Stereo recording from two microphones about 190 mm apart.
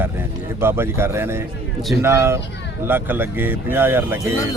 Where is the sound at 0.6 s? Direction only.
10° right (ahead or behind).